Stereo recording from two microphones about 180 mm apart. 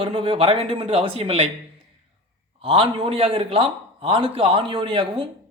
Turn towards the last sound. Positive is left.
turn(degrees=-25)  # may be behind; listen again after turning